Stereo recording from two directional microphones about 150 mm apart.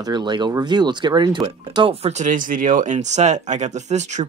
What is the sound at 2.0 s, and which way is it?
Speech, 55° right (ahead or behind).